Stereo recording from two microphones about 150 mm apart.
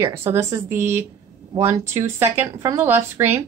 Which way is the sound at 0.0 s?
15° right (ahead or behind).